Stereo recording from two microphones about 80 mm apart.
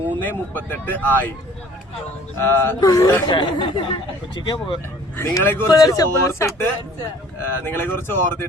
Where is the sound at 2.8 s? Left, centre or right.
Left.